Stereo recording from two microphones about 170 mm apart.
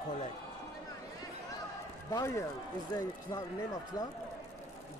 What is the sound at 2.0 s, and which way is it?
Speech, 20° left (ahead or behind).